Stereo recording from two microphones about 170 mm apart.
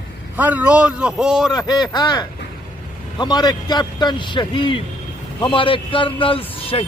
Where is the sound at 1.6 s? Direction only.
25° left (ahead or behind).